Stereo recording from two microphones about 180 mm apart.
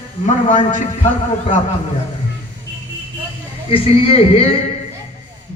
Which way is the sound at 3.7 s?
30° left (ahead or behind).